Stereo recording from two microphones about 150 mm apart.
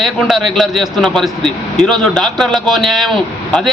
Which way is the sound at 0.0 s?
Centre (ahead or behind).